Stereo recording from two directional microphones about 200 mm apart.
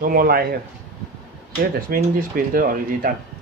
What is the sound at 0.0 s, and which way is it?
Speech, 45° right (ahead or behind).